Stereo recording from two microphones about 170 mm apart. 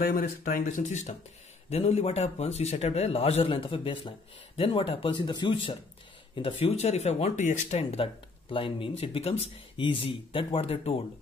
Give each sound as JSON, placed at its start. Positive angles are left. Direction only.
{"t": 0.0, "sound": "speech", "side_deg": 60}
{"t": 6.6, "sound": "speech", "side_deg": 40}